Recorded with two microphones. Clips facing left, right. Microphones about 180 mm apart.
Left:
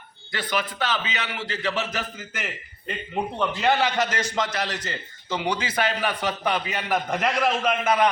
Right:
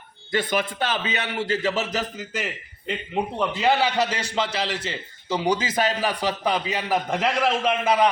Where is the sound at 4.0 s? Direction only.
30° right (ahead or behind).